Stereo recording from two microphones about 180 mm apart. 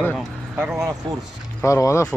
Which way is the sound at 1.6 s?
15° left (ahead or behind).